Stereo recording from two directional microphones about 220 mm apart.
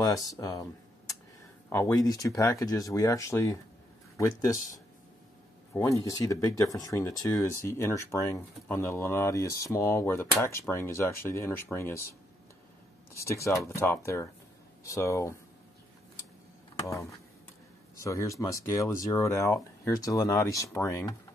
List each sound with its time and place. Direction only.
0.0 s speech: 15° left (ahead or behind)
5.7 s speech: 15° left (ahead or behind)
13.1 s speech: 15° left (ahead or behind)
17.9 s speech: 15° left (ahead or behind)